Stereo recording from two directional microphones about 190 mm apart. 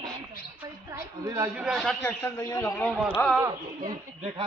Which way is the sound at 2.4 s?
15° left (ahead or behind).